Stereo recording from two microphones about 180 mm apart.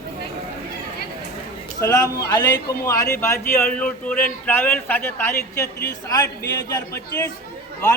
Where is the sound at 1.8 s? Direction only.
20° left (ahead or behind).